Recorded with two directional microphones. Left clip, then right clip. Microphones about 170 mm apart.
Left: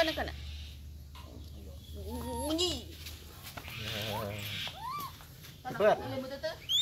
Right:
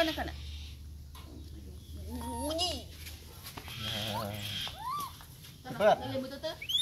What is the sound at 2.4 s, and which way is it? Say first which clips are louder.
Speech: left 1 dB; 40° left (ahead or behind).